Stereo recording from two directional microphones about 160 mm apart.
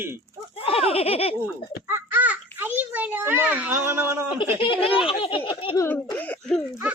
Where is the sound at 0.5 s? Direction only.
35° left (ahead or behind).